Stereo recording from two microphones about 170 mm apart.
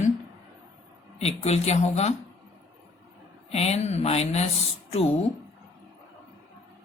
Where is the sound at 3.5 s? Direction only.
40° left (ahead or behind).